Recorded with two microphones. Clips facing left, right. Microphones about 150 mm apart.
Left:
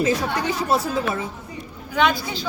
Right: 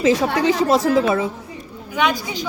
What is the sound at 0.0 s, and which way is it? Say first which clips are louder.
A woman's voice: right 5 dB; 90° right.